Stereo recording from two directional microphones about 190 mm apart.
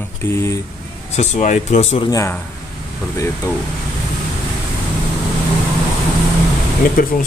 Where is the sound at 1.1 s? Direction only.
40° left (ahead or behind).